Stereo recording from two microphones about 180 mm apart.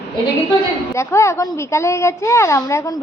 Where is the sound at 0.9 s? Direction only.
15° left (ahead or behind).